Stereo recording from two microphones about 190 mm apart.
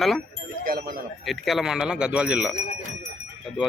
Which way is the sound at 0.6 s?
50° right (ahead or behind).